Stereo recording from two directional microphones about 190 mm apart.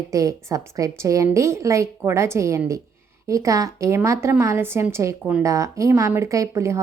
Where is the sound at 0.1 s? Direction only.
15° right (ahead or behind).